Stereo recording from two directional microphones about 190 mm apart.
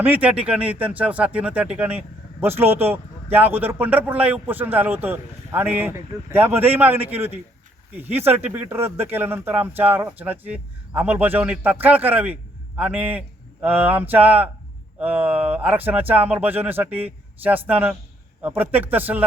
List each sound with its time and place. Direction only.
0.0 s a man's voice: 10° right (ahead or behind)